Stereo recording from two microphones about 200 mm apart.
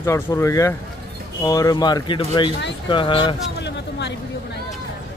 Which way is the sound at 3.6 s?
60° left (ahead or behind).